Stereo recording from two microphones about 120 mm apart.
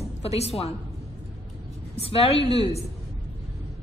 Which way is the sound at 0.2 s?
60° left (ahead or behind).